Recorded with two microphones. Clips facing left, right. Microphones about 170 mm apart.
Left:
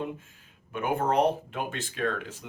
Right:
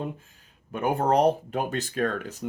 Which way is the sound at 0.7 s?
40° right (ahead or behind).